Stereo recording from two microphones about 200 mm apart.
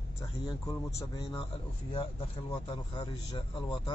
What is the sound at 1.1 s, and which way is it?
A man's voice, 25° left (ahead or behind).